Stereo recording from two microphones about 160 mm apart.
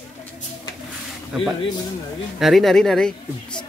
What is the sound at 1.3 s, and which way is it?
Speech, 5° right (ahead or behind).